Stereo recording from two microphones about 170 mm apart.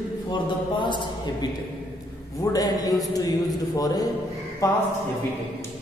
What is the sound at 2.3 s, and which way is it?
A man's voice, 20° left (ahead or behind).